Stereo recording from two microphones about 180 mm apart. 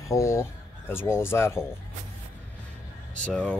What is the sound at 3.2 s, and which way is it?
Speech, 5° left (ahead or behind).